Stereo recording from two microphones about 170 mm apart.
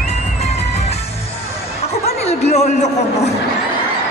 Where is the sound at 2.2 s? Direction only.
40° left (ahead or behind).